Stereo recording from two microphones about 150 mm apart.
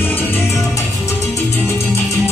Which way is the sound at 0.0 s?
15° left (ahead or behind).